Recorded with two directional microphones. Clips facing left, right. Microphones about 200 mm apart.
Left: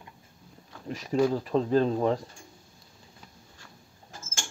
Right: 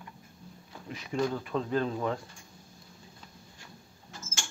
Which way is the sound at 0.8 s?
40° left (ahead or behind).